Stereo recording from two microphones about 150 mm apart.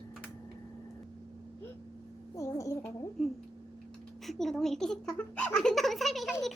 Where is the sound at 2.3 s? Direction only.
20° left (ahead or behind).